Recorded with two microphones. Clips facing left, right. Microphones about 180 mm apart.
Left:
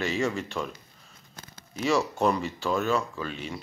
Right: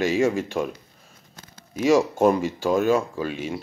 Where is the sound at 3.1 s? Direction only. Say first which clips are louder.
Right 7 dB; 10° right (ahead or behind).